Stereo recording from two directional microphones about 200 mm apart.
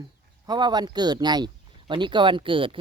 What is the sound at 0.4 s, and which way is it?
Speech, 20° right (ahead or behind).